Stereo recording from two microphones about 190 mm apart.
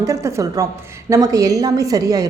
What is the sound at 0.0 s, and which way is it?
A woman's voice, 15° right (ahead or behind).